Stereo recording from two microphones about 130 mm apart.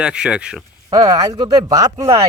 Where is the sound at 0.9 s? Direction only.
30° right (ahead or behind).